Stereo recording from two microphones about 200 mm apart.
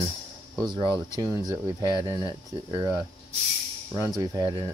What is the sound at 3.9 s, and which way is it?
Speech, 15° right (ahead or behind).